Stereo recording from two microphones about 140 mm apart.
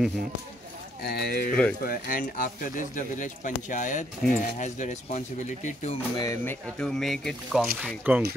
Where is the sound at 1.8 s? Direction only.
90° left; by 5.9 s 55° left (ahead or behind).